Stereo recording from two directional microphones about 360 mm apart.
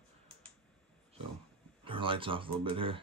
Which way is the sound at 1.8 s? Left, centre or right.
Centre.